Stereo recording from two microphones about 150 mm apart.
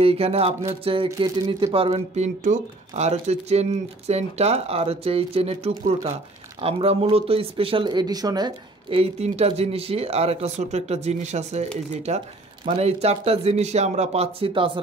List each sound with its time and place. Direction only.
0.0 s speech: 40° right (ahead or behind)